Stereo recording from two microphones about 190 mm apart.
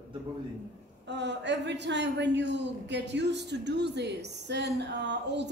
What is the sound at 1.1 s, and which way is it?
A man's voice, 65° right (ahead or behind).